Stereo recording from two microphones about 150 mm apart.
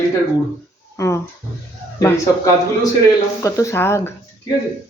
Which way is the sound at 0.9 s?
20° left (ahead or behind).